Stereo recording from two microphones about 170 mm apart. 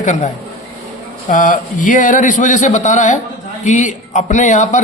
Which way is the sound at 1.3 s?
50° left (ahead or behind).